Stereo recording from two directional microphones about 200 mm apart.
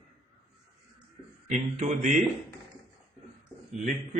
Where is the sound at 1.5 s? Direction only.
35° right (ahead or behind).